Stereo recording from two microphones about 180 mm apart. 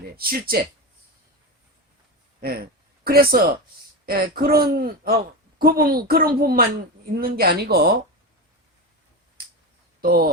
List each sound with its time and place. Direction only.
0.2 s speech: 55° right (ahead or behind)
2.4 s speech: 60° right (ahead or behind)
10.0 s speech: 55° right (ahead or behind)